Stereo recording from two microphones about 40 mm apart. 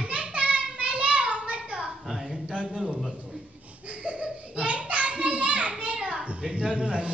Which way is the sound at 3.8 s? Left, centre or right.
Right.